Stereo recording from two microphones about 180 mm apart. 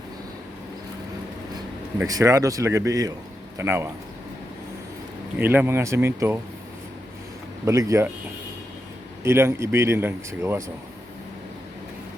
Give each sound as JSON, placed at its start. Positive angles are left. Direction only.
{"t": 2.0, "sound": "speech", "side_deg": -20}
{"t": 5.4, "sound": "speech", "side_deg": -10}
{"t": 7.6, "sound": "speech", "side_deg": -15}
{"t": 9.2, "sound": "speech", "side_deg": -15}